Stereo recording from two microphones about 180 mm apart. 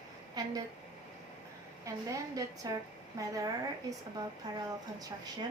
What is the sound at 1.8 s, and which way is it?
A woman's voice, 20° right (ahead or behind).